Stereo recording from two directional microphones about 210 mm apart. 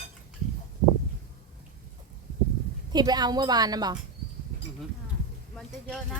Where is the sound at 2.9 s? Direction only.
20° right (ahead or behind).